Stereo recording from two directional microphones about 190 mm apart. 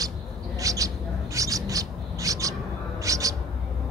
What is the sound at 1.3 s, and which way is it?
Bird, 15° right (ahead or behind).